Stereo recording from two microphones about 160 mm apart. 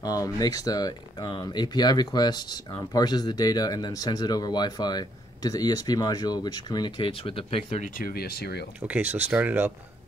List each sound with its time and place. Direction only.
0.0 s speech: 25° left (ahead or behind)
7.8 s speech: 65° left (ahead or behind)
8.8 s speech: 10° right (ahead or behind)